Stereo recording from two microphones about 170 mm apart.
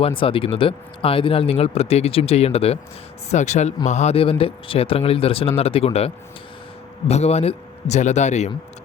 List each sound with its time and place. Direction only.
0.0 s speech: 30° left (ahead or behind)
7.1 s speech: 40° left (ahead or behind)